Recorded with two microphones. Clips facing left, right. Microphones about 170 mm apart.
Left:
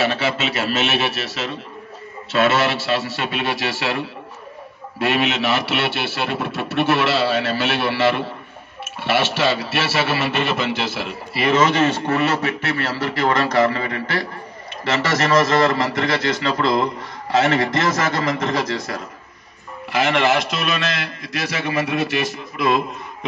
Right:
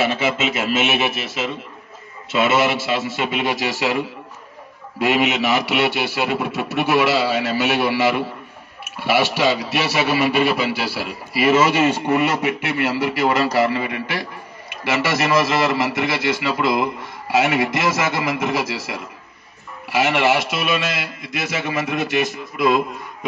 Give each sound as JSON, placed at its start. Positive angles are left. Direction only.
{"t": 0.5, "sound": "a man's voice", "side_deg": -15}
{"t": 2.3, "sound": "a man's voice", "side_deg": -10}
{"t": 5.0, "sound": "a man's voice", "side_deg": -15}
{"t": 21.8, "sound": "a man's voice", "side_deg": -20}